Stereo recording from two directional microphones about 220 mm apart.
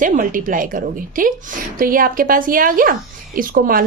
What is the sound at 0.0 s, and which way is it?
A woman's voice, 35° right (ahead or behind).